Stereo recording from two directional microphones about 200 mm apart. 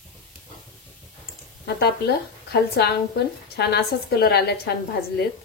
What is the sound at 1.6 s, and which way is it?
Speech, 50° left (ahead or behind).